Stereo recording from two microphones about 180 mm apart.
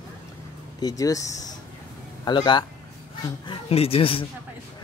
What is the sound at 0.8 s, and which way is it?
Speech, 20° left (ahead or behind).